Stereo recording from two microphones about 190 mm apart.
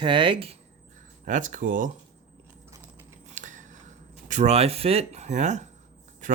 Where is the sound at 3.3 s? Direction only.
40° right (ahead or behind).